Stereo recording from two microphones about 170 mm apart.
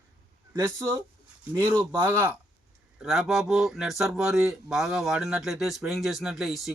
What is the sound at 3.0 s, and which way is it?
Speech, centre (ahead or behind).